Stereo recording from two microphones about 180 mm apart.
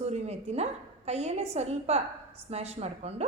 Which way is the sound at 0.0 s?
35° right (ahead or behind).